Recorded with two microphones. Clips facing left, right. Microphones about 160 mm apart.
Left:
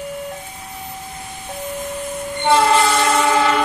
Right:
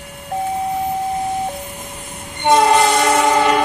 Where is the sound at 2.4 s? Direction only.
20° right (ahead or behind).